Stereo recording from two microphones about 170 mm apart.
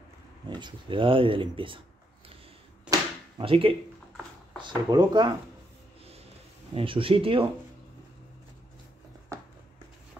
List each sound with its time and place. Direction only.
0.5 s speech: 25° right (ahead or behind)
2.9 s a sound: 30° right (ahead or behind)
4.6 s speech: 25° right (ahead or behind)
6.7 s speech: 30° right (ahead or behind)